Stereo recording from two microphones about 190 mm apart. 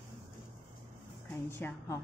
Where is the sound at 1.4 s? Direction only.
10° left (ahead or behind).